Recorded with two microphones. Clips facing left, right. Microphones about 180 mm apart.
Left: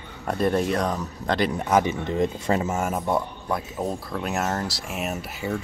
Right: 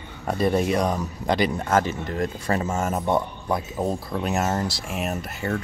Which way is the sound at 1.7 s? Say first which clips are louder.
Left 1 dB; 15° left (ahead or behind).